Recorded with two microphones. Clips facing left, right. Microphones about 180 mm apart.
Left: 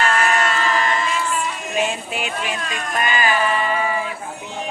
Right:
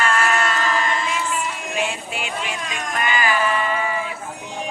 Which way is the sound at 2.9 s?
20° left (ahead or behind).